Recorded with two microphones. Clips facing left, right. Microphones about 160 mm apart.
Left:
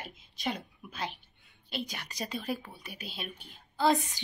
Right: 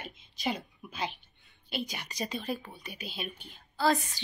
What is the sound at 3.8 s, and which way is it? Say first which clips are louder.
Speech: left 1 dB; 20° left (ahead or behind).